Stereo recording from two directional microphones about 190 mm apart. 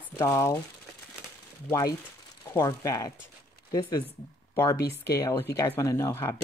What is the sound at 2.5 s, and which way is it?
Speech, 15° left (ahead or behind).